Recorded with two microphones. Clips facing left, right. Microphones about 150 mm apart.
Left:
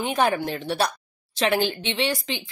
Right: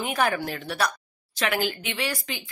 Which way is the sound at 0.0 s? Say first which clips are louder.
Left 3 dB; 25° left (ahead or behind).